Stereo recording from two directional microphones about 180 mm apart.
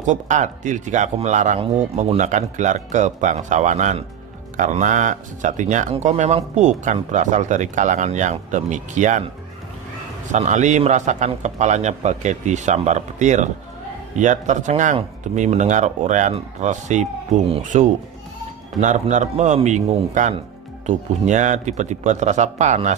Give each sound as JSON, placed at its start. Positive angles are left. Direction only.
{"t": 0.0, "sound": "speech", "side_deg": -40}
{"t": 10.3, "sound": "speech", "side_deg": -40}